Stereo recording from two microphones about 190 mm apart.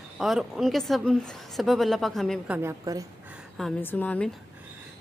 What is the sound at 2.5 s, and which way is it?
Speech, 15° right (ahead or behind).